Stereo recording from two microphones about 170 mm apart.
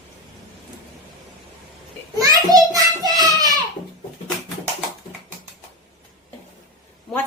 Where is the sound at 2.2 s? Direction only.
20° right (ahead or behind).